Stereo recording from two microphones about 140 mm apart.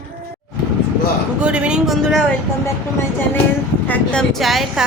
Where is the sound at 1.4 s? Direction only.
5° right (ahead or behind).